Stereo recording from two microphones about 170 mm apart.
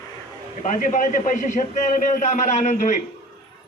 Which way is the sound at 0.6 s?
50° left (ahead or behind).